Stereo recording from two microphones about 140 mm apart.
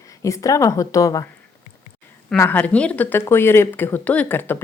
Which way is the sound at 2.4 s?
15° left (ahead or behind).